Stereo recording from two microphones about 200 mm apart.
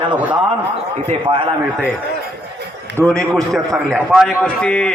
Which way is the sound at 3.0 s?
5° left (ahead or behind).